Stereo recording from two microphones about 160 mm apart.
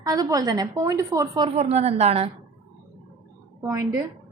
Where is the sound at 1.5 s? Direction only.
40° right (ahead or behind).